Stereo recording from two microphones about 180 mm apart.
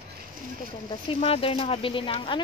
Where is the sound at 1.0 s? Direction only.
30° left (ahead or behind).